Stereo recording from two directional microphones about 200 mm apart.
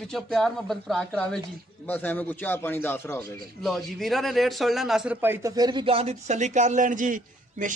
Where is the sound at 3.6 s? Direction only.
Centre (ahead or behind).